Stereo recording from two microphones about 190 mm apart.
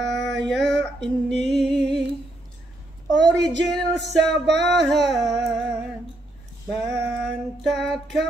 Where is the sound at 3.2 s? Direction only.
20° right (ahead or behind).